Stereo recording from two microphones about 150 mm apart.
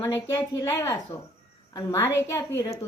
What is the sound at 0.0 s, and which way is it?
A woman's voice, 25° left (ahead or behind).